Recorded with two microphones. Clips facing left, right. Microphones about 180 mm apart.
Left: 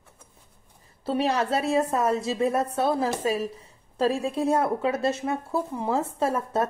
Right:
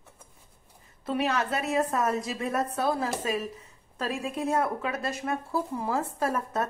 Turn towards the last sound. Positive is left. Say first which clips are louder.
# left 4 dB
turn(degrees=30)  # may be behind; listen again after turning